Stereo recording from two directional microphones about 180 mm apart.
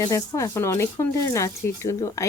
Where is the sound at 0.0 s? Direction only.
20° left (ahead or behind).